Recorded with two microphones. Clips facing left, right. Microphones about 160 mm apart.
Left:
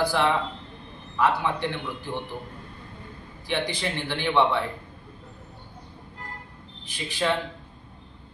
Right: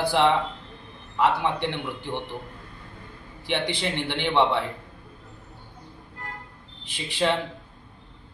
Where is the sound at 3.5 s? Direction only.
25° right (ahead or behind).